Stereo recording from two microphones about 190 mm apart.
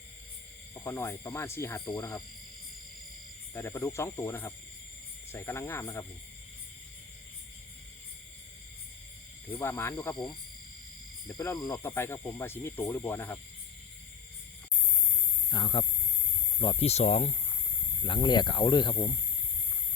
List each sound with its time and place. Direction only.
0.7 s speech: 15° left (ahead or behind)
3.5 s speech: 10° left (ahead or behind)
9.5 s speech: 10° left (ahead or behind)
11.3 s speech: 20° left (ahead or behind)
15.4 s speech: 25° left (ahead or behind)
18.0 s speech: 25° left (ahead or behind)